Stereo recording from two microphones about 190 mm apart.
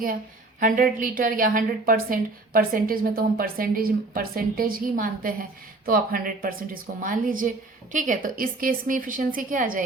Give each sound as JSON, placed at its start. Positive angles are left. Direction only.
{"t": 0.6, "sound": "a woman's voice", "side_deg": -45}